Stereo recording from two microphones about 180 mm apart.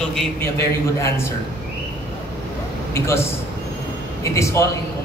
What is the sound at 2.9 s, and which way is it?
Speech, 15° left (ahead or behind).